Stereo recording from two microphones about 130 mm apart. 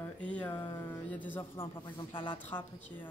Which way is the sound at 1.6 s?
40° left (ahead or behind).